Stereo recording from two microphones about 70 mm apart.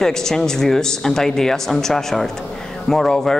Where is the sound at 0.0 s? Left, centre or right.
Centre.